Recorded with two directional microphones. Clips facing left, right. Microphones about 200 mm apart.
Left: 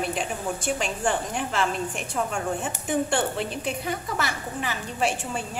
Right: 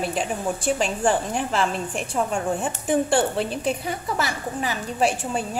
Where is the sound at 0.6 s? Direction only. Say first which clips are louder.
Right 5 dB; 35° right (ahead or behind).